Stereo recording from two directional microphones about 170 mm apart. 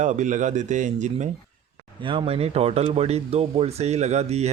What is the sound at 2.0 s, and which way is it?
Speech, 30° right (ahead or behind).